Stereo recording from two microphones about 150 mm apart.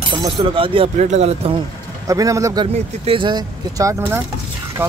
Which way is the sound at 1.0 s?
45° right (ahead or behind).